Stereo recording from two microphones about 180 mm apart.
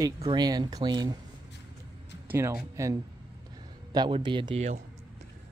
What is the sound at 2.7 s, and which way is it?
Speech, 15° right (ahead or behind).